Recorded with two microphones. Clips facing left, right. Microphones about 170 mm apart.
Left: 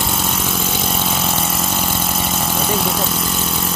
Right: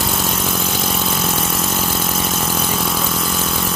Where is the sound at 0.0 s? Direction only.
Centre (ahead or behind).